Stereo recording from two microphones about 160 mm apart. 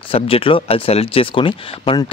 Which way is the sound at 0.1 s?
35° left (ahead or behind).